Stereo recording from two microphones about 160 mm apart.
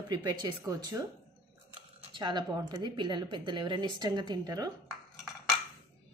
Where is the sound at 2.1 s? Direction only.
30° right (ahead or behind).